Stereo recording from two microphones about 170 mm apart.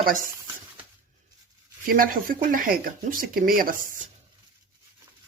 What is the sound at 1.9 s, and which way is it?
Speech, 55° right (ahead or behind).